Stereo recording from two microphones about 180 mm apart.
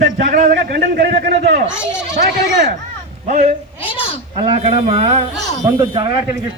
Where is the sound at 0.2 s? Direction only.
45° right (ahead or behind); by 1.4 s 60° right (ahead or behind).